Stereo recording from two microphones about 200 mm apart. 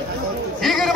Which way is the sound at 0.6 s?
Centre (ahead or behind).